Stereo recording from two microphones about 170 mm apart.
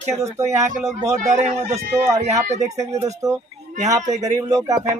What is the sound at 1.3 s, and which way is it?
Speech, 40° right (ahead or behind).